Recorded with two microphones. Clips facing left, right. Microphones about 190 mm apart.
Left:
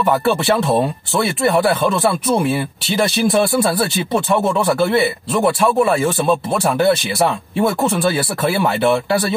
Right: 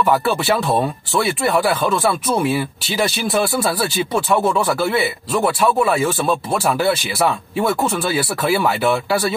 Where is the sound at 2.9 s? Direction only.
Centre (ahead or behind).